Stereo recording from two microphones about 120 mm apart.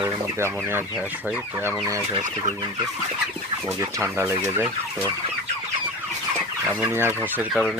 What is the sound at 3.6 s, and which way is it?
Speech, 25° right (ahead or behind).